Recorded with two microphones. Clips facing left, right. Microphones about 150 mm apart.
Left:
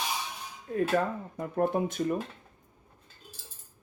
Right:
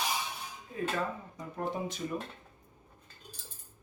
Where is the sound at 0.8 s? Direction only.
55° left (ahead or behind).